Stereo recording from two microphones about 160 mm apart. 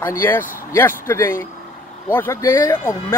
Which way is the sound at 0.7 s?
15° left (ahead or behind).